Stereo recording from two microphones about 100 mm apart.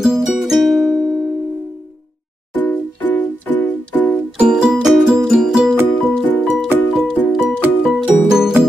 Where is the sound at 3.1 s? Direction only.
20° left (ahead or behind).